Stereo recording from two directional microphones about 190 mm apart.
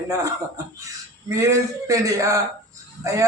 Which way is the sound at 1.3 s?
15° right (ahead or behind).